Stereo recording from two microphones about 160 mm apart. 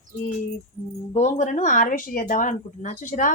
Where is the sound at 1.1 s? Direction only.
45° left (ahead or behind).